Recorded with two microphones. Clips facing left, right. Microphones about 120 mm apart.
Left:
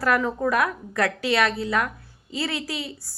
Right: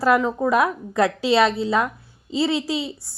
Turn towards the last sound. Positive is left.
turn(degrees=-25)  # may be behind; listen again after turning